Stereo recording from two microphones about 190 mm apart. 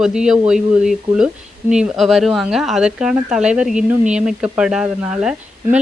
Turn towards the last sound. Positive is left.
turn(degrees=-5)  # may be behind; listen again after turning